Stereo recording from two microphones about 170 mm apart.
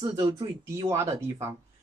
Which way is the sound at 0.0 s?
20° right (ahead or behind).